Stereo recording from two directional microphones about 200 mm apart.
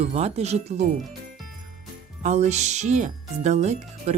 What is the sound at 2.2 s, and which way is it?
Speech, 35° right (ahead or behind).